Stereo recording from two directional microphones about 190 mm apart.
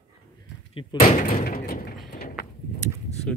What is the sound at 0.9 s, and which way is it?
Door, 50° left (ahead or behind).